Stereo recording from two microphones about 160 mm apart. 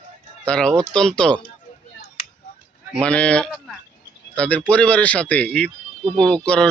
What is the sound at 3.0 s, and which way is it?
Speech, 5° left (ahead or behind).